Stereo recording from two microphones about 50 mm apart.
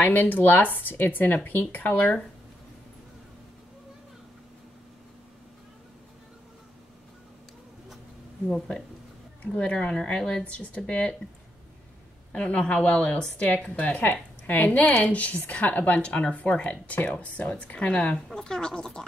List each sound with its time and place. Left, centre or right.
0.0 s speech: left
9.5 s a woman's voice: left
12.3 s a woman's voice: left